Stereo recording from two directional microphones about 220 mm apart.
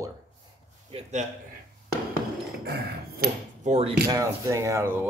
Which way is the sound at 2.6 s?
45° right (ahead or behind).